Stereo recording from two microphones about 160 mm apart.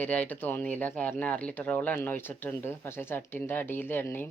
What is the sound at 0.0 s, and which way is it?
Speech, 10° left (ahead or behind).